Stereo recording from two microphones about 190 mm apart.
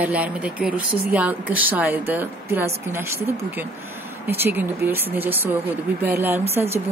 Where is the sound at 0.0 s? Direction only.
5° right (ahead or behind).